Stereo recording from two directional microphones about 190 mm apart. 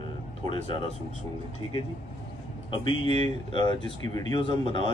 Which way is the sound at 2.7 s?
25° left (ahead or behind).